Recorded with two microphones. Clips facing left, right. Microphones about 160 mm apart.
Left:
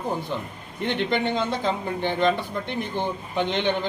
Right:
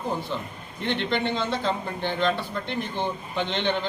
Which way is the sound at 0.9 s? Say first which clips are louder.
Left 3 dB; 15° left (ahead or behind).